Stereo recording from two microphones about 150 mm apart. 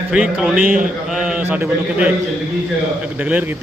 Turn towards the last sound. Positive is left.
turn(degrees=-10)  # may be behind; listen again after turning